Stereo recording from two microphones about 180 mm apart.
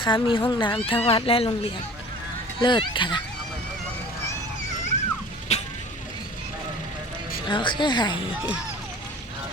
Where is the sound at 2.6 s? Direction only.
25° left (ahead or behind).